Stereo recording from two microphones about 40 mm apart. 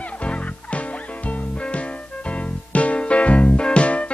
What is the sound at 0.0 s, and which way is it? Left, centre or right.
Music, left.